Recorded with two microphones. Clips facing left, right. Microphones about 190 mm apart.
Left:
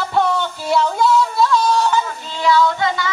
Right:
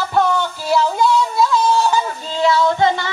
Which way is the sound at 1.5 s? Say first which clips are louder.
Right 2 dB; 30° right (ahead or behind).